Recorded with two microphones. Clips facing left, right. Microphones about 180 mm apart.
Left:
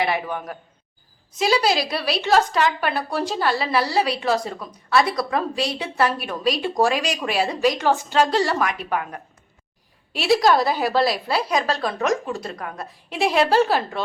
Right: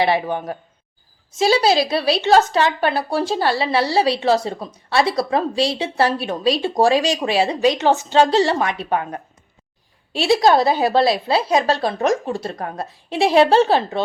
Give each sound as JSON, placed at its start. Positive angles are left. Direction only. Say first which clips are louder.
{"t": 0.0, "sound": "a woman's voice", "louder": "right 5 dB", "side_deg": -30}